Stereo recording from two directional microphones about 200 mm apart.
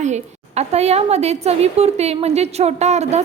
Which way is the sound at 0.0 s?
35° right (ahead or behind).